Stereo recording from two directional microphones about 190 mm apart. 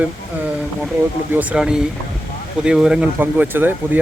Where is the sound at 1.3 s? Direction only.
5° right (ahead or behind).